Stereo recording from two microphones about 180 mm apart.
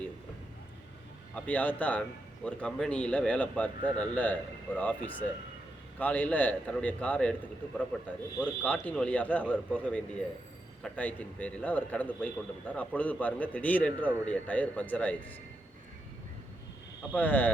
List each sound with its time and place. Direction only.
1.4 s a man's voice: 10° left (ahead or behind)
17.2 s a man's voice: 10° left (ahead or behind)